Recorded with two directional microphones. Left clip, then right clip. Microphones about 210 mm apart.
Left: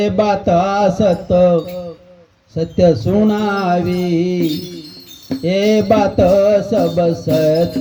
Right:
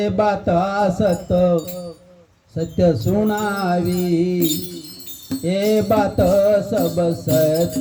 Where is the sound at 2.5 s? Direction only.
20° left (ahead or behind).